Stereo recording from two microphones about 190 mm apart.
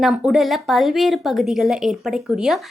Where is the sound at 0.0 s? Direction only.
Centre (ahead or behind).